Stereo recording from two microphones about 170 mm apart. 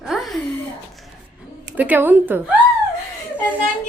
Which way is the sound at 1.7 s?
10° right (ahead or behind).